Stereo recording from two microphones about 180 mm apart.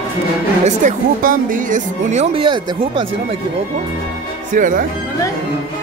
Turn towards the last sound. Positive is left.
turn(degrees=-50)  # may be behind; listen again after turning